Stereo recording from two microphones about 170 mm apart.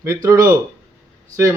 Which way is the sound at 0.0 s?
20° right (ahead or behind).